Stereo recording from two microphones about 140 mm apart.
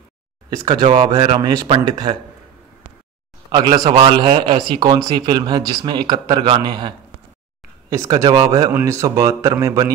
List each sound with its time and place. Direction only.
0.7 s speech: 35° right (ahead or behind)
3.9 s speech: 40° right (ahead or behind)
7.9 s speech: 25° right (ahead or behind)